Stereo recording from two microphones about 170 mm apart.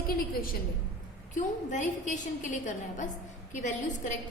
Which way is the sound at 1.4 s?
45° left (ahead or behind).